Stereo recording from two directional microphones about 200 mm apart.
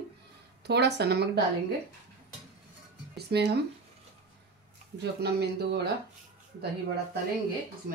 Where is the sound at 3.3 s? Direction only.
55° right (ahead or behind).